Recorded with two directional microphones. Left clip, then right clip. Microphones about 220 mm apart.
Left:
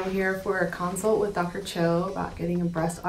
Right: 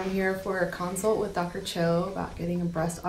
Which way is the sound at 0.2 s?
Centre (ahead or behind).